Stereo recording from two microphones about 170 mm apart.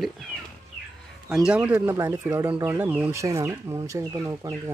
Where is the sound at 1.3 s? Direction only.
5° right (ahead or behind).